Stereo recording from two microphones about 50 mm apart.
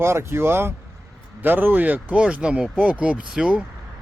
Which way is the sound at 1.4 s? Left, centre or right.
Right.